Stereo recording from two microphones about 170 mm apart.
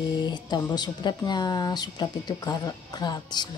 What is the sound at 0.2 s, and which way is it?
Speech, 25° left (ahead or behind).